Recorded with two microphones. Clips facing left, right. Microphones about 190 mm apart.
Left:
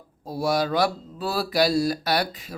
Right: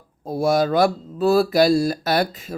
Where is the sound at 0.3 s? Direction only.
50° right (ahead or behind).